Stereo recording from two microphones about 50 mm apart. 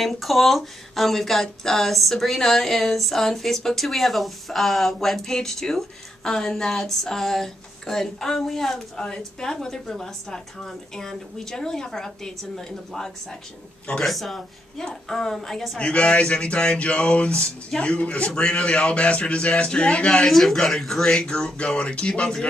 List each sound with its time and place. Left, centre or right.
0.0 s speech: centre
15.8 s a man's voice: left
20.2 s speech: centre
21.0 s a man's voice: centre